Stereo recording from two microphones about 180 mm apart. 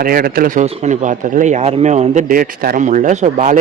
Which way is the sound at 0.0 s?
55° right (ahead or behind).